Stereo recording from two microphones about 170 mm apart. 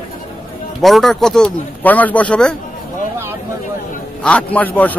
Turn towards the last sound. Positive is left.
turn(degrees=10)  # may be behind; listen again after turning